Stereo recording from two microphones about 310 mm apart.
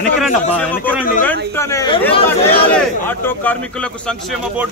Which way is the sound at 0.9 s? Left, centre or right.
Centre.